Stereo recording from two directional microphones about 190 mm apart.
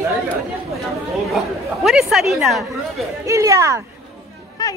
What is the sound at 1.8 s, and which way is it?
Speech, centre (ahead or behind).